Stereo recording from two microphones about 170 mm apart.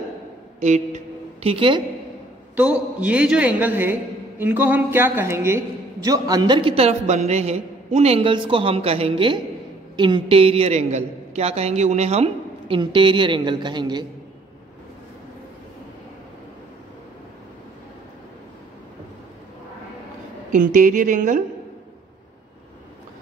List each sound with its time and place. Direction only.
0.6 s a woman's voice: 40° right (ahead or behind)
2.5 s a woman's voice: 10° right (ahead or behind); by 14.0 s 25° right (ahead or behind)
20.7 s speech: 50° right (ahead or behind)